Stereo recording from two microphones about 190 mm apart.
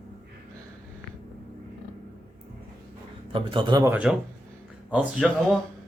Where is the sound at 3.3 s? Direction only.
25° right (ahead or behind).